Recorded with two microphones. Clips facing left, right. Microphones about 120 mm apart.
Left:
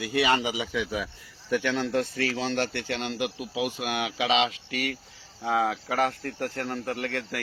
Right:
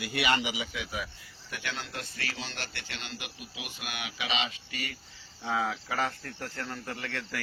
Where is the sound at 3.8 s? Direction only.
90° left.